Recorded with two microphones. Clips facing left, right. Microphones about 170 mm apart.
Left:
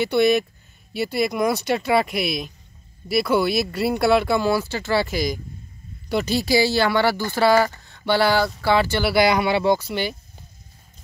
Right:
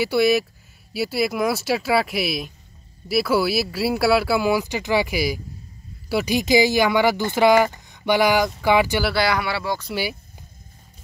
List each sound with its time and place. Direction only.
0.0 s speech: 5° right (ahead or behind)
9.1 s speech: 20° left (ahead or behind)